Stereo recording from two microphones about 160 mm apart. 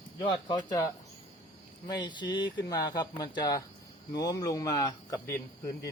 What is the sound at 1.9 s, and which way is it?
Speech, 25° left (ahead or behind).